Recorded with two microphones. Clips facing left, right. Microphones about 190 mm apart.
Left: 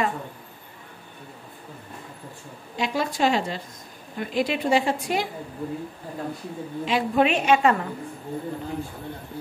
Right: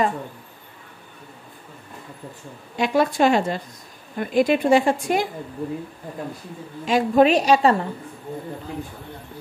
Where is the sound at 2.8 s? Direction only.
55° right (ahead or behind).